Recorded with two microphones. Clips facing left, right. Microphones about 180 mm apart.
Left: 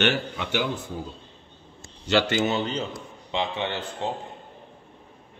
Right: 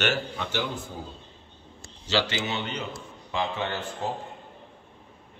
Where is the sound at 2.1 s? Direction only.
55° left (ahead or behind); by 2.8 s 40° left (ahead or behind).